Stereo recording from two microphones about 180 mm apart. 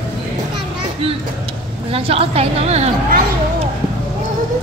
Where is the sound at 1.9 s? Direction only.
30° right (ahead or behind).